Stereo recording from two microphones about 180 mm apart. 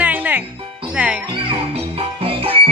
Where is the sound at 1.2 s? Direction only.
30° right (ahead or behind).